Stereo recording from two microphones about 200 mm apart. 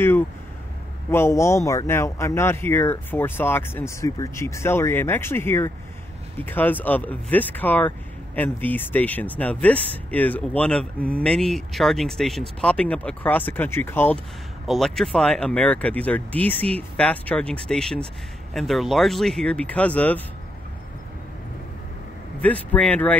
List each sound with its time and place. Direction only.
1.1 s speech: 15° left (ahead or behind)
22.4 s speech: 5° left (ahead or behind)